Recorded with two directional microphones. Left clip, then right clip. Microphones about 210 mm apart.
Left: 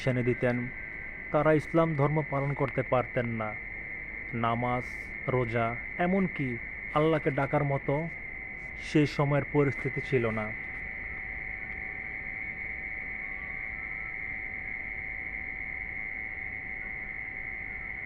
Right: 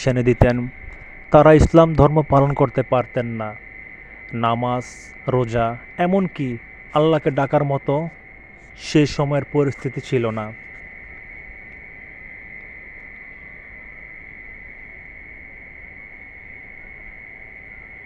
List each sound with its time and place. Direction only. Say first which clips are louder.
0.0 s speech: right 11 dB; 40° right (ahead or behind)
9.8 s speech: right 7 dB; 50° right (ahead or behind)